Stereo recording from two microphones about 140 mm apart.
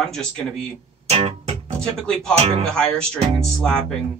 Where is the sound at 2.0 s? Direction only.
5° left (ahead or behind).